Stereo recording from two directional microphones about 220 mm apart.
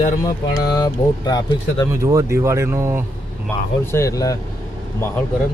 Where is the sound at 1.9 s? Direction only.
15° right (ahead or behind).